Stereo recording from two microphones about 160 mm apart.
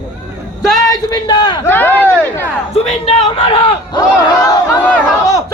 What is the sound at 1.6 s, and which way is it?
Speech, 10° left (ahead or behind).